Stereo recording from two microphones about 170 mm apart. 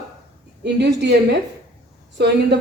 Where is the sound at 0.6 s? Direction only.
85° right.